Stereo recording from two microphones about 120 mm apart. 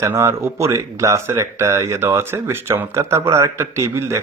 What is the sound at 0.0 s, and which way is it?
Speech, 20° right (ahead or behind).